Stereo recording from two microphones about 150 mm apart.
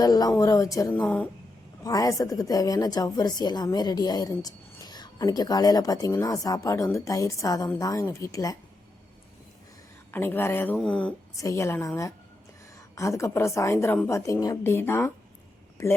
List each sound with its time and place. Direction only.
0.0 s a woman's voice: 25° left (ahead or behind)
1.8 s a woman's voice: 25° left (ahead or behind)
10.1 s a woman's voice: 15° left (ahead or behind)
11.3 s a woman's voice: 20° left (ahead or behind)
13.0 s a woman's voice: 20° left (ahead or behind)